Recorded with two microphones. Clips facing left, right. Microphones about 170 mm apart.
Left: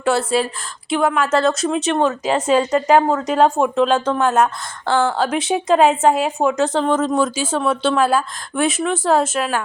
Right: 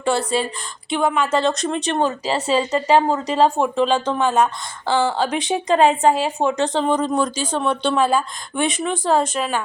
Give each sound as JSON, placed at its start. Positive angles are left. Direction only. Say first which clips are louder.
{"t": 0.0, "sound": "a woman's voice", "louder": "left 2 dB", "side_deg": 5}
{"t": 2.3, "sound": "a woman's voice", "louder": "left 4 dB", "side_deg": 50}
{"t": 2.7, "sound": "a woman's voice", "louder": "left 2 dB", "side_deg": 5}